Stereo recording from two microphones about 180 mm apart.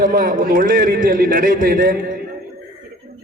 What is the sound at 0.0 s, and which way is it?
A man's voice, 50° right (ahead or behind).